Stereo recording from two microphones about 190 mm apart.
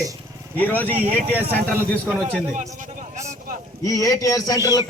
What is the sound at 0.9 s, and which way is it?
Speech, 10° right (ahead or behind).